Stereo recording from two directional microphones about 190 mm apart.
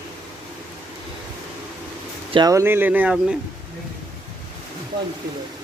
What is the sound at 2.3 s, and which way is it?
Speech, 20° right (ahead or behind).